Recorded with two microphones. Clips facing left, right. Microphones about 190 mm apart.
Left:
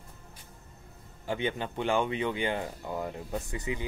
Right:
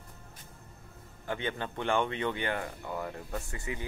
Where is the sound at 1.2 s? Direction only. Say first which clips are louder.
Left 3 dB; 15° left (ahead or behind).